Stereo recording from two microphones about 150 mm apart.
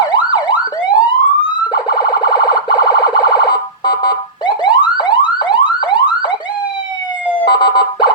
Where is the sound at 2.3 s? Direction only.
25° left (ahead or behind).